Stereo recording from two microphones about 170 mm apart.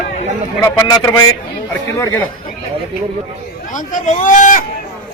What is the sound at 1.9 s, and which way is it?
Speech, 15° left (ahead or behind).